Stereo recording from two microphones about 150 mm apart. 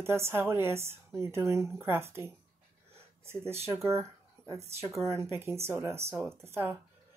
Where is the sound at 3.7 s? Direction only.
15° right (ahead or behind).